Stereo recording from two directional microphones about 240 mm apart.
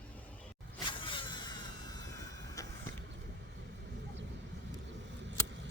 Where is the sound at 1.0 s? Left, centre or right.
Left.